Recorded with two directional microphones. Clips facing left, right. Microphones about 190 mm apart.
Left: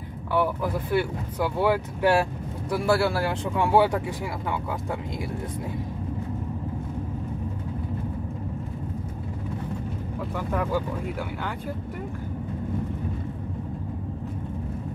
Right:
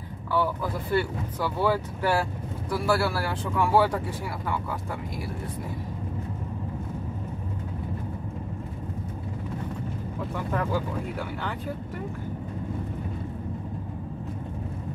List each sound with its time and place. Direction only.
0.3 s speech: 15° left (ahead or behind)
10.5 s speech: 5° left (ahead or behind)